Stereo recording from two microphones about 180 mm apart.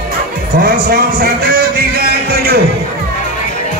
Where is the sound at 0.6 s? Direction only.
60° right (ahead or behind).